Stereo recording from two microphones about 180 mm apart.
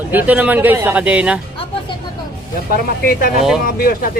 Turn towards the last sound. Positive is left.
turn(degrees=55)  # may be behind; listen again after turning